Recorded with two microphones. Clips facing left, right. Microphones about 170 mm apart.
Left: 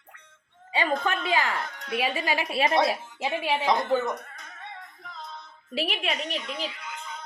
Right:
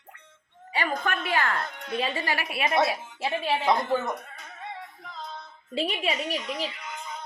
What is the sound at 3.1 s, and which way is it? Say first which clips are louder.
Speech: even; 15° left (ahead or behind).